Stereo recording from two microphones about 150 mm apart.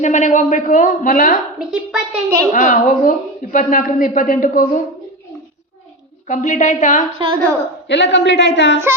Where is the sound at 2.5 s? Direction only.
55° left (ahead or behind).